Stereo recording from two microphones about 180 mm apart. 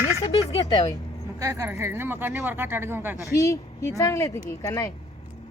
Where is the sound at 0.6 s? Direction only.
20° left (ahead or behind).